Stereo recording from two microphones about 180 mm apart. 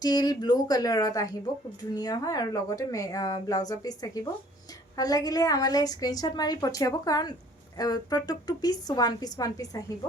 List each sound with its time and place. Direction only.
0.0 s speech: 20° left (ahead or behind)